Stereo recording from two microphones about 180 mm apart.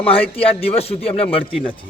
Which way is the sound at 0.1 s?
30° left (ahead or behind).